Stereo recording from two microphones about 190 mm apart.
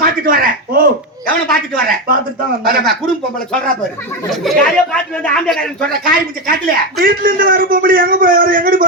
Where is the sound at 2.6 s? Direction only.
50° right (ahead or behind).